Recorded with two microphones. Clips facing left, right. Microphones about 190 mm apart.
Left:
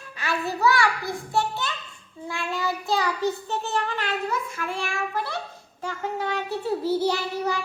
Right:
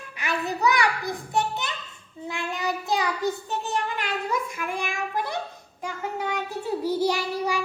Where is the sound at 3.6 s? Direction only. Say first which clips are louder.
Left 1 dB; 15° right (ahead or behind).